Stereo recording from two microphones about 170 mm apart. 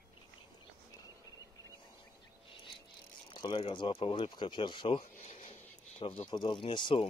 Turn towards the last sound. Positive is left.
turn(degrees=30)  # may be behind; listen again after turning